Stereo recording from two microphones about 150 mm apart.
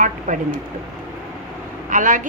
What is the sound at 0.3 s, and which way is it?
Speech, 60° right (ahead or behind).